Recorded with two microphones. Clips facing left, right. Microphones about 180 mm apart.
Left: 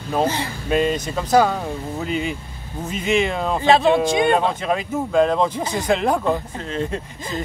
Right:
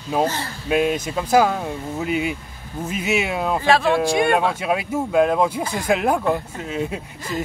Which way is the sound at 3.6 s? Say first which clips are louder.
Left 3 dB; 20° left (ahead or behind).